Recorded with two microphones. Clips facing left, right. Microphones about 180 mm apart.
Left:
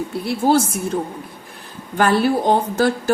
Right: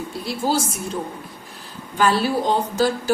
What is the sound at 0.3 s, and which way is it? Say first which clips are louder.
Speech: left 6 dB; 60° left (ahead or behind).